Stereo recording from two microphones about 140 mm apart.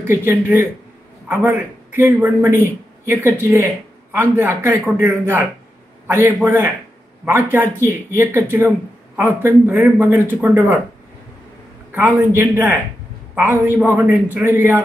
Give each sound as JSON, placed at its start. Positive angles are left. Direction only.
{"t": 0.0, "sound": "speech", "side_deg": -15}
{"t": 11.9, "sound": "speech", "side_deg": -15}